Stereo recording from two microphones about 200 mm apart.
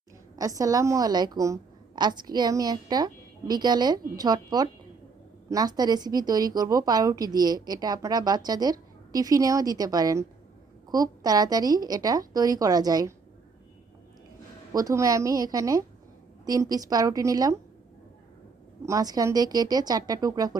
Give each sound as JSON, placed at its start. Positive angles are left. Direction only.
{"t": 0.3, "sound": "a woman's voice", "side_deg": -15}
{"t": 14.7, "sound": "a woman's voice", "side_deg": -20}
{"t": 18.9, "sound": "a woman's voice", "side_deg": -20}